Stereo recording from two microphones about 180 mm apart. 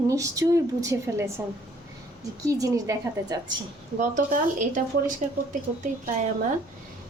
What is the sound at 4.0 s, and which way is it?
Speech, 45° right (ahead or behind).